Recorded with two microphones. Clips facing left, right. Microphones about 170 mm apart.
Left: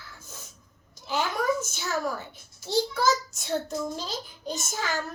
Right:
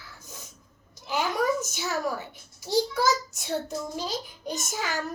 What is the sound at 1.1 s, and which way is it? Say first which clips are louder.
A child's voice: right 1 dB; 15° right (ahead or behind).